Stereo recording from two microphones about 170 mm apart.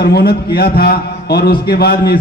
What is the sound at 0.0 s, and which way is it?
A man's voice, 70° left (ahead or behind).